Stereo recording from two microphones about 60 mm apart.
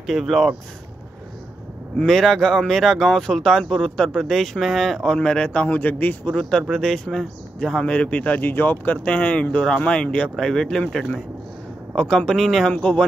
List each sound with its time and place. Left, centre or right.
0.0 s speech: centre
2.0 s speech: centre; by 6.3 s left
6.3 s speech: centre
12.7 s speech: centre